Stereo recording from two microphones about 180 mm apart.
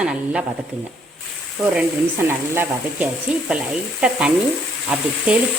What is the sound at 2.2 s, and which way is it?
Frying, 10° right (ahead or behind).